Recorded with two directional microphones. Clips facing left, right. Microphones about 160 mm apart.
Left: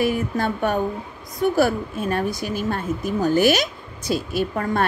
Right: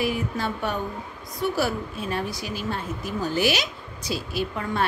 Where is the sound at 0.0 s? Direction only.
50° left (ahead or behind).